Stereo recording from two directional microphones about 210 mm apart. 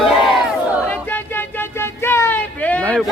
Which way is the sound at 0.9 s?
10° left (ahead or behind).